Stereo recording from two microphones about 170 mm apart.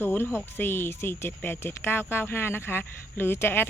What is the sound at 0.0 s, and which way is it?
Speech, 15° left (ahead or behind).